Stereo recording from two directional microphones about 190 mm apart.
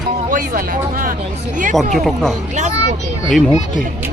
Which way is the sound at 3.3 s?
Centre (ahead or behind).